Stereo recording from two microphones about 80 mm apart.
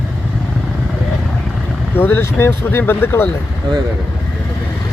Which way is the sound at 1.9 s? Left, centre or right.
Left.